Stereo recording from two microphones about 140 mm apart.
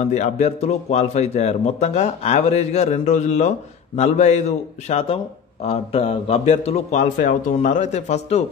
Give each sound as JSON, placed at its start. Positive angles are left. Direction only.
{"t": 0.0, "sound": "a man's voice", "side_deg": 55}